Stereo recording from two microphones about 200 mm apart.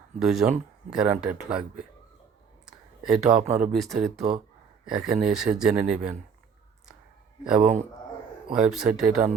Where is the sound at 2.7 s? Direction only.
5° right (ahead or behind).